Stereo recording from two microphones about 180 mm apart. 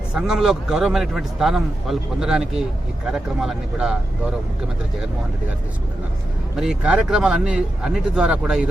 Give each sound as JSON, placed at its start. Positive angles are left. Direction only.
{"t": 0.1, "sound": "a man's voice", "side_deg": -5}
{"t": 6.6, "sound": "a man's voice", "side_deg": -5}